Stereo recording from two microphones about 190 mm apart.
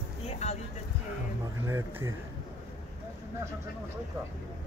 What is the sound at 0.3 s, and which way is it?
Music, 35° left (ahead or behind).